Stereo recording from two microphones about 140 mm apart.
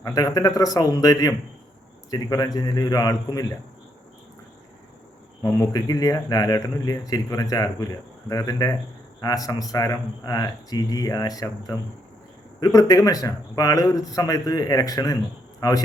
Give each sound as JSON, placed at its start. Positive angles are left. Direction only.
{"t": 0.0, "sound": "speech", "side_deg": 25}
{"t": 5.4, "sound": "speech", "side_deg": 25}